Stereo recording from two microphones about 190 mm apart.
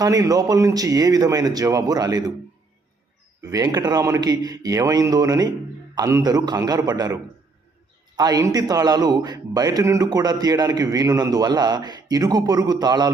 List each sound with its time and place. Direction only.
0.0 s a man's voice: 20° right (ahead or behind)
3.4 s a man's voice: 20° right (ahead or behind)